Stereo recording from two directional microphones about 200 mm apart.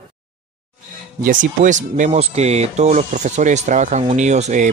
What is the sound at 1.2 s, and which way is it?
Speech, 40° right (ahead or behind).